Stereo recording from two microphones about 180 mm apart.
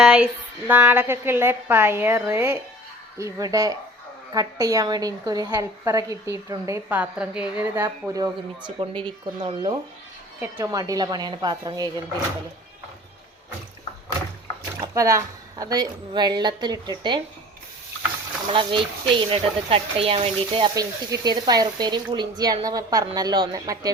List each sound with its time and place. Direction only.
0.0 s a sound: 5° right (ahead or behind)
0.7 s a woman's voice: 10° right (ahead or behind)
14.8 s speech: 15° right (ahead or behind)
18.5 s speech: 30° right (ahead or behind)